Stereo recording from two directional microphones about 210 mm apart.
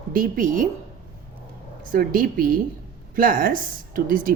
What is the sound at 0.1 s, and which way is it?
Speech, 40° right (ahead or behind).